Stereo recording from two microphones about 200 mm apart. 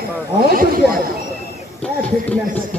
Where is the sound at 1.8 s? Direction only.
5° left (ahead or behind).